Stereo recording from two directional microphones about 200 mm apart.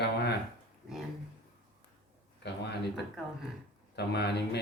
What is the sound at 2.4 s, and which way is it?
Speech, 55° left (ahead or behind).